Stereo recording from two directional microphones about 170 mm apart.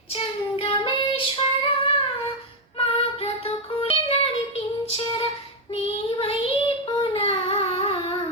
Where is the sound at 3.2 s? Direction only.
35° left (ahead or behind).